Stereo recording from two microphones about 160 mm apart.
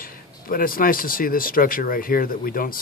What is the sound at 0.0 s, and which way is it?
Speech, 60° left (ahead or behind).